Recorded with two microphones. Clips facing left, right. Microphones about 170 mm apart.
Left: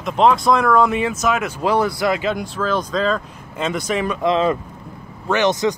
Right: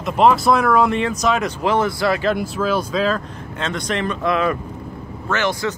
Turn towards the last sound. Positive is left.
turn(degrees=20)  # may be behind; listen again after turning